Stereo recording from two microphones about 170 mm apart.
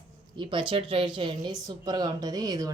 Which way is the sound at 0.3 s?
30° right (ahead or behind).